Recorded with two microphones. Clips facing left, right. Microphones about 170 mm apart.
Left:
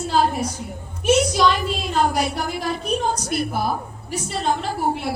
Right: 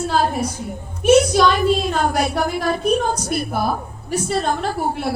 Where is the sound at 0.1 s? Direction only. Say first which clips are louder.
Left 2 dB; 50° right (ahead or behind).